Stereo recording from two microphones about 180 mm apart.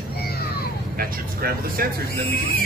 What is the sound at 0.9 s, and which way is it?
Speech, 55° right (ahead or behind).